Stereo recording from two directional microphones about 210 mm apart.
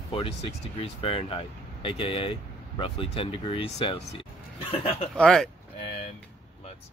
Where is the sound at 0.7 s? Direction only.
25° left (ahead or behind).